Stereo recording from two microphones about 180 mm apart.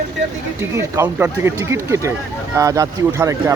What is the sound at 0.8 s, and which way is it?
Speech, 15° right (ahead or behind).